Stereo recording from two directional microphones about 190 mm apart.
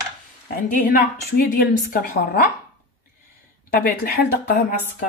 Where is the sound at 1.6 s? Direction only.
50° left (ahead or behind).